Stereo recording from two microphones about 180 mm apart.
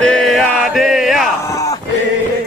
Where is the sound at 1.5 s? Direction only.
20° left (ahead or behind).